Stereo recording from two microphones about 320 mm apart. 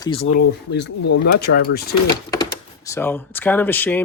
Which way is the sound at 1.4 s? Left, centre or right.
Left.